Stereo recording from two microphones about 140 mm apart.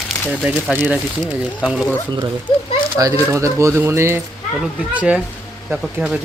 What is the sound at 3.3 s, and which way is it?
Speech, 20° right (ahead or behind).